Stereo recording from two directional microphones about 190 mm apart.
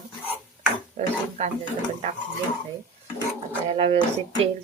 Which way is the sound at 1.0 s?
35° right (ahead or behind).